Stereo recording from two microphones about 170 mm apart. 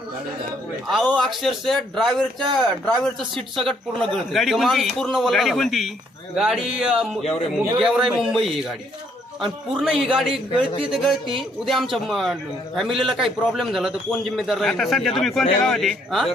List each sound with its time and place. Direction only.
0.9 s a man's voice: 5° left (ahead or behind)